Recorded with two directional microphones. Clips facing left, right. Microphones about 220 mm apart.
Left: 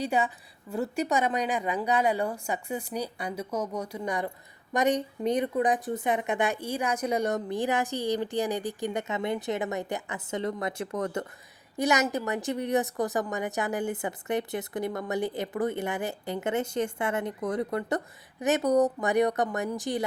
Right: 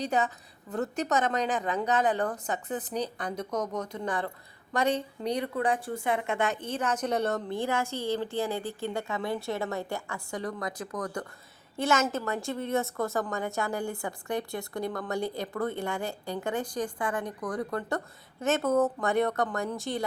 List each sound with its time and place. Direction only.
0.0 s a woman's voice: 10° left (ahead or behind)